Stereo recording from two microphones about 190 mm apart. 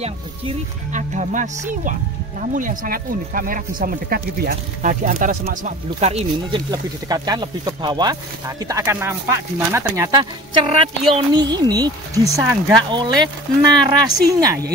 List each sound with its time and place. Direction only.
0.9 s speech: 40° right (ahead or behind)
6.7 s speech: 20° right (ahead or behind)